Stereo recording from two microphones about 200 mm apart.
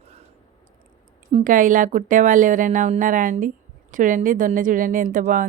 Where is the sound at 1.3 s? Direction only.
40° right (ahead or behind).